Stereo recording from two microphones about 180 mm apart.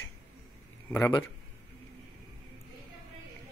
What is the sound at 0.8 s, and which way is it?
Speech, 10° left (ahead or behind).